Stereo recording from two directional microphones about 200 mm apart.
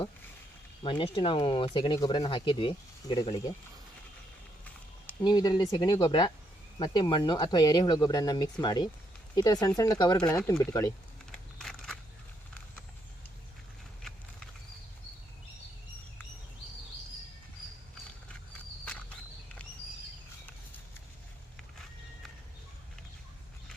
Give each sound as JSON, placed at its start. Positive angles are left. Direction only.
{"t": 0.8, "sound": "speech", "side_deg": 25}
{"t": 5.2, "sound": "speech", "side_deg": 20}
{"t": 11.3, "sound": "a sound", "side_deg": 0}